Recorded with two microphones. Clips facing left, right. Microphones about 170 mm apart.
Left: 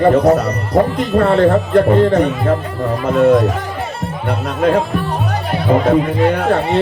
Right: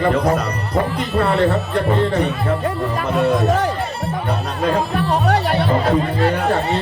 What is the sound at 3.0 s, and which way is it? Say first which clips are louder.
Speech: left 6 dB; 60° left (ahead or behind).